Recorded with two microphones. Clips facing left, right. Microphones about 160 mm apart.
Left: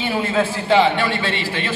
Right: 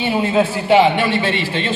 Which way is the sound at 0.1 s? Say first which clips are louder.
Right 4 dB; 15° right (ahead or behind).